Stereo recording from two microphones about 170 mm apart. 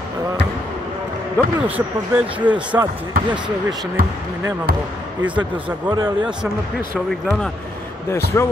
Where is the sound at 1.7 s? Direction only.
10° right (ahead or behind).